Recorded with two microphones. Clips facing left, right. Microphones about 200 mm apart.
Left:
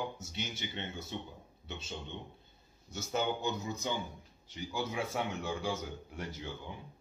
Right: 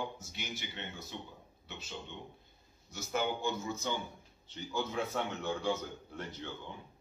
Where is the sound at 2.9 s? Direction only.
20° left (ahead or behind).